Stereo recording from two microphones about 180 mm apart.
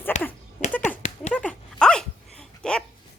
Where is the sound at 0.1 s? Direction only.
40° left (ahead or behind).